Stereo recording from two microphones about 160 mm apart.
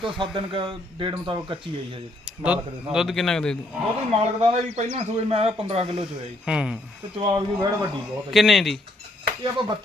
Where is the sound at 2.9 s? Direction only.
Centre (ahead or behind).